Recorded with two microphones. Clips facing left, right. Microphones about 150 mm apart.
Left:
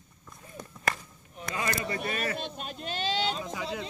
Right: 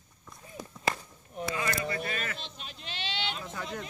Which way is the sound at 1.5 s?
35° left (ahead or behind).